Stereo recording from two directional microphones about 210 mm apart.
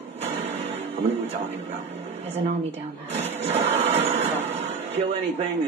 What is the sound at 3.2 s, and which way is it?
Music, 30° right (ahead or behind).